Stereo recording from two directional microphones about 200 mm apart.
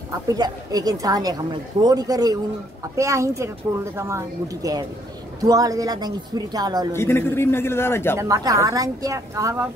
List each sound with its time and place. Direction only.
0.3 s a woman's voice: 20° right (ahead or behind)
6.9 s a man's voice: 10° left (ahead or behind)
8.2 s a woman's voice: 15° right (ahead or behind)